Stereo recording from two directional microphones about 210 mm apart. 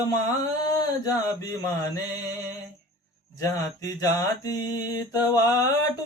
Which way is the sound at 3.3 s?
15° left (ahead or behind).